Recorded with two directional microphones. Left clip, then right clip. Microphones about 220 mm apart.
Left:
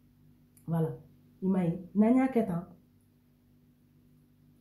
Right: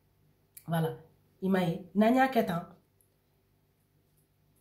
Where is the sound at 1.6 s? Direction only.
35° right (ahead or behind).